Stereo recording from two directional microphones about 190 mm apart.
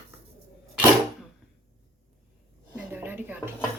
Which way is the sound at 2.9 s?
10° right (ahead or behind).